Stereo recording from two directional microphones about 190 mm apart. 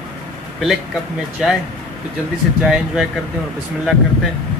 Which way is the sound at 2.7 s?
5° right (ahead or behind).